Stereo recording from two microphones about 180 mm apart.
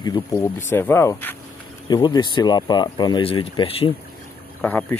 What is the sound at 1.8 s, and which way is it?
Speech, 25° left (ahead or behind).